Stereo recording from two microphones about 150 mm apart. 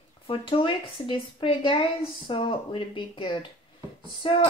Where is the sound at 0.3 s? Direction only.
35° left (ahead or behind).